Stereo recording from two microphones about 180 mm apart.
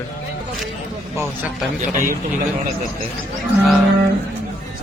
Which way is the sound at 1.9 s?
45° right (ahead or behind).